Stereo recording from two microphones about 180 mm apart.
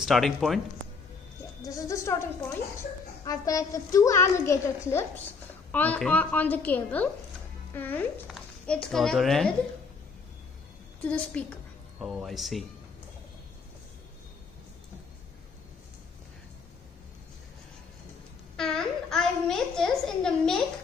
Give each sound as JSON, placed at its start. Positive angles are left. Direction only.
{"t": 0.0, "sound": "speech", "side_deg": 0}
{"t": 1.7, "sound": "a woman's voice", "side_deg": 20}
{"t": 3.3, "sound": "a woman's voice", "side_deg": 20}
{"t": 11.1, "sound": "a woman's voice", "side_deg": 5}
{"t": 18.6, "sound": "a child's voice", "side_deg": 5}